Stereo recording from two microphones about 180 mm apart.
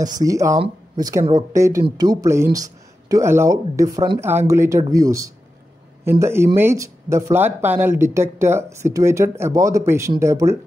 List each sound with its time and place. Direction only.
0.2 s speech: 20° right (ahead or behind)